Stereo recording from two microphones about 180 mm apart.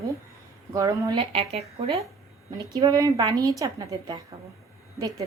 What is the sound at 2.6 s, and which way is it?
Speech, 20° right (ahead or behind).